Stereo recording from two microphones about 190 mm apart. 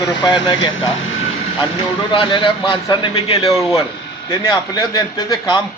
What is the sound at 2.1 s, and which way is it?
A man's voice, 25° left (ahead or behind).